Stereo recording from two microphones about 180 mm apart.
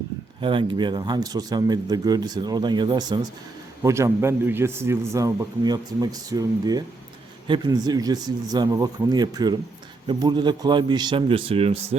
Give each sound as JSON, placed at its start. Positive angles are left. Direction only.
{"t": 0.4, "sound": "a man's voice", "side_deg": -25}